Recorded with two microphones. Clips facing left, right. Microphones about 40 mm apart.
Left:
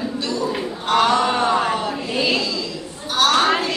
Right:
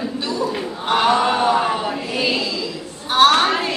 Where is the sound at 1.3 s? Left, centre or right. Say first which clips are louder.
Right 1 dB; centre.